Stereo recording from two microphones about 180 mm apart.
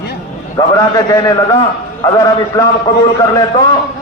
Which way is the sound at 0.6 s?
20° left (ahead or behind).